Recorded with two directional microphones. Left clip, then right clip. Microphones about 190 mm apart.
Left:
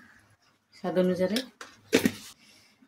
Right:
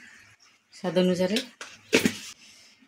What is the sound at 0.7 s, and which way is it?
Speech, 40° right (ahead or behind).